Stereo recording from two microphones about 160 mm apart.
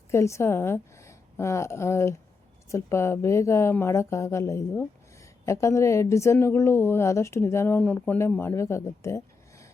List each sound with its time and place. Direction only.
0.1 s a woman's voice: 20° left (ahead or behind)